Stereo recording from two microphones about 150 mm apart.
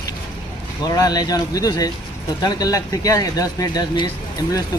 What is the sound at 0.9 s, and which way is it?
Speech, 25° left (ahead or behind).